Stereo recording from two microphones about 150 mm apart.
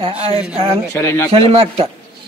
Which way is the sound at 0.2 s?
40° right (ahead or behind).